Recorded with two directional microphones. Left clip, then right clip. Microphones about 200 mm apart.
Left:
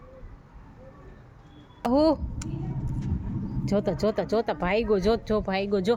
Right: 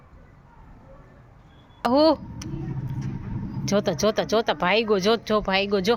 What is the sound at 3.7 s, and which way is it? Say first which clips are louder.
Speech: right 4 dB; 5° left (ahead or behind).